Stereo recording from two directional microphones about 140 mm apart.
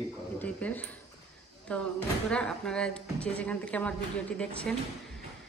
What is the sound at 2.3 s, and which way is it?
A woman's voice, 5° left (ahead or behind).